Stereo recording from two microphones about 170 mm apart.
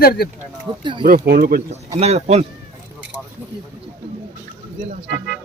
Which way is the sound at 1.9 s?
40° right (ahead or behind).